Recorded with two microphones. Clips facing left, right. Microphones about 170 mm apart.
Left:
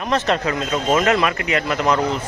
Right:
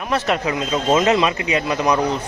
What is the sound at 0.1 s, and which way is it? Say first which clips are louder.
Speech: even; 10° right (ahead or behind).